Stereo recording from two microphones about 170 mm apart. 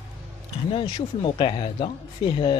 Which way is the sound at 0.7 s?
30° left (ahead or behind).